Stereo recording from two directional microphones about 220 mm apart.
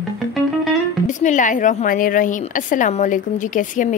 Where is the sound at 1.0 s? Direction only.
35° left (ahead or behind).